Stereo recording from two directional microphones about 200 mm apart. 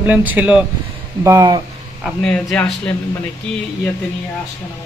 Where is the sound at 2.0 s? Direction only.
5° left (ahead or behind).